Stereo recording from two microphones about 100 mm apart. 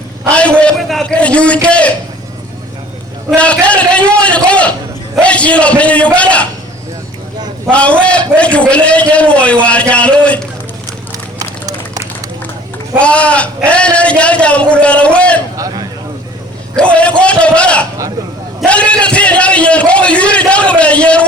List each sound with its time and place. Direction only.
0.3 s a man's voice: 10° left (ahead or behind)
0.8 s a man's voice: centre (ahead or behind)
1.0 s a man's voice: 10° left (ahead or behind)
3.3 s a sound: 10° left (ahead or behind)
5.2 s a man's voice: 10° left (ahead or behind)
7.7 s a man's voice: 10° left (ahead or behind)
13.0 s a man's voice: 10° left (ahead or behind)
15.5 s a sound: 40° right (ahead or behind)
16.7 s a man's voice: 10° left (ahead or behind)